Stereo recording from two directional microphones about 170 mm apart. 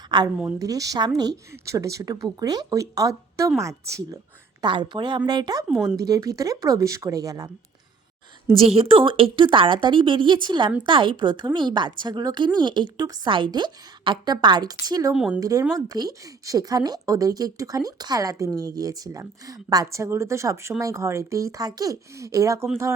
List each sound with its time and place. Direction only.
0.1 s a woman's voice: 25° right (ahead or behind)
5.6 s speech: centre (ahead or behind)
6.0 s speech: 20° right (ahead or behind)
8.5 s speech: 35° right (ahead or behind)
15.1 s speech: 5° right (ahead or behind)
15.4 s speech: 20° right (ahead or behind)